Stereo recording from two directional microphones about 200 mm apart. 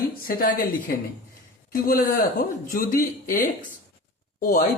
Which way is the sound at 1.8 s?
45° left (ahead or behind).